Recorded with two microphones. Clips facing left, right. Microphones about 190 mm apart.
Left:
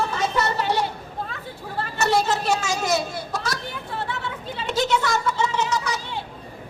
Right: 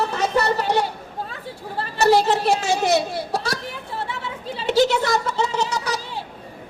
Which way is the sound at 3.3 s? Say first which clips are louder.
Right 3 dB; 35° right (ahead or behind).